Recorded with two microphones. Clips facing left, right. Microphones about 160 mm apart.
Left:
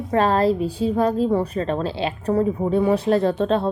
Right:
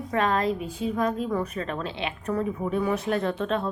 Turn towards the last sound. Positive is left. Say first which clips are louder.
# left 7 dB
turn(degrees=30)  # may be behind; listen again after turning